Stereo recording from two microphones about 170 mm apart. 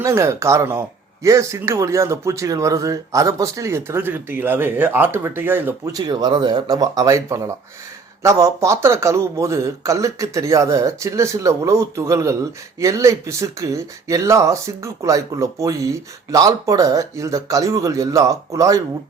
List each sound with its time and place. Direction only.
0.0 s speech: 15° right (ahead or behind)